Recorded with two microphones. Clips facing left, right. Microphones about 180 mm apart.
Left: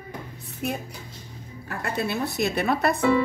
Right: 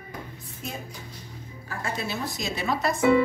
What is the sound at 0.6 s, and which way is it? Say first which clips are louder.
Speech: left 7 dB; 65° left (ahead or behind).